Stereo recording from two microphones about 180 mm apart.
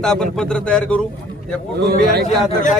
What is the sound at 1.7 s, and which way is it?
Speech, 65° right (ahead or behind).